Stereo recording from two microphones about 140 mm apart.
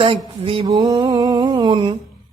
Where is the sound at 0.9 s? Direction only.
30° right (ahead or behind).